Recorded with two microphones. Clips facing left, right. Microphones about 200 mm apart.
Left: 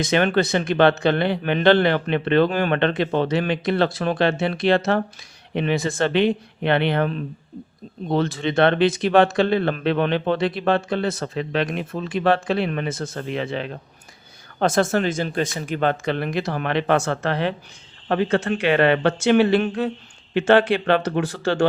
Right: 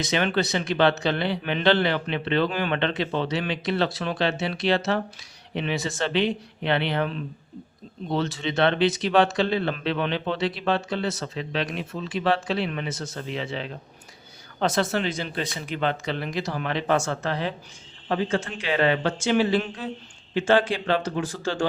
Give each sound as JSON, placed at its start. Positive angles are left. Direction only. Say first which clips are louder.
{"t": 0.0, "sound": "speech", "louder": "left 5 dB", "side_deg": 50}